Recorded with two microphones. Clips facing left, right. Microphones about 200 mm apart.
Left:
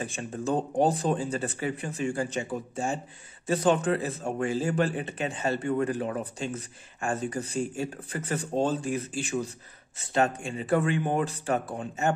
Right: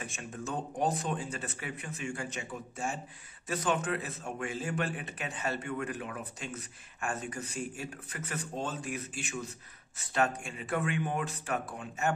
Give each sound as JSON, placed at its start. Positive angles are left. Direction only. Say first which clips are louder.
{"t": 0.0, "sound": "speech", "louder": "left 8 dB", "side_deg": 30}